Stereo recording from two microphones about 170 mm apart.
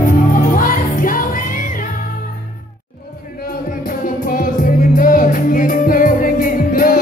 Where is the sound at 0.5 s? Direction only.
55° left (ahead or behind).